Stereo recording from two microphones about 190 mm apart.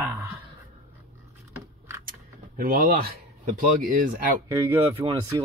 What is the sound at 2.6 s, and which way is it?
Speech, 50° right (ahead or behind).